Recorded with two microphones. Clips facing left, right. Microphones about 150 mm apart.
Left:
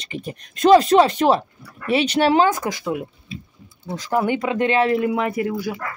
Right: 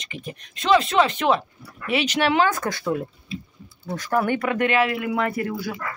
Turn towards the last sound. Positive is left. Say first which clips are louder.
# left 3 dB
turn(degrees=20)  # may be behind; listen again after turning